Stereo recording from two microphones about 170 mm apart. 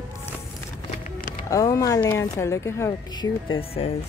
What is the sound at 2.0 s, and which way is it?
Speech, 15° left (ahead or behind).